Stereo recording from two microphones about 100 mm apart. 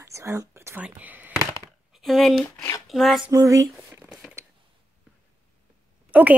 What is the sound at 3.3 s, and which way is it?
Speech, 35° right (ahead or behind).